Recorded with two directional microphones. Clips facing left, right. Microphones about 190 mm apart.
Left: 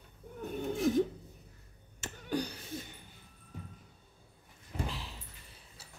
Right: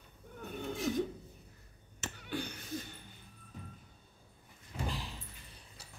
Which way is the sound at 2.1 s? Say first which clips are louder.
Left 6 dB; 40° left (ahead or behind).